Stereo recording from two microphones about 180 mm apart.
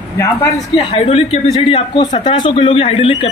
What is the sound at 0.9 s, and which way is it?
Speech, 35° left (ahead or behind).